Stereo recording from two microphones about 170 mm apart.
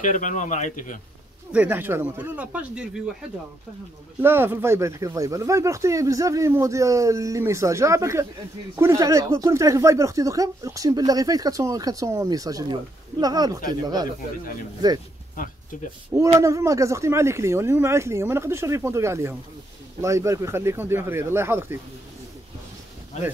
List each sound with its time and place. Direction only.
0.0 s a man's voice: 45° left (ahead or behind)
1.5 s speech: 10° right (ahead or behind)
4.2 s speech: 15° right (ahead or behind)
15.3 s a sound: 50° left (ahead or behind)
16.3 s speech: 20° right (ahead or behind)